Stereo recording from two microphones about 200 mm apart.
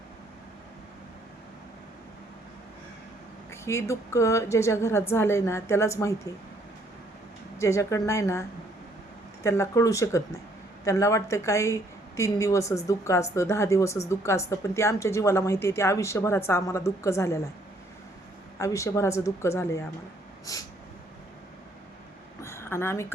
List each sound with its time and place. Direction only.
3.5 s speech: 15° left (ahead or behind)
7.6 s speech: 15° left (ahead or behind)
18.6 s speech: 15° left (ahead or behind)
22.4 s a sound: 15° left (ahead or behind)